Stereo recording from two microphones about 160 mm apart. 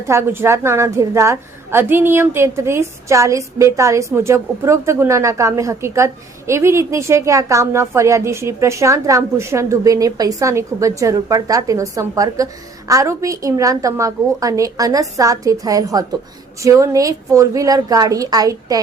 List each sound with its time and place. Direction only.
0.0 s a woman's voice: 15° right (ahead or behind)